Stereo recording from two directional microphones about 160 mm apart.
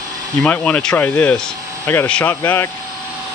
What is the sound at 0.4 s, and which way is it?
Speech, 10° left (ahead or behind).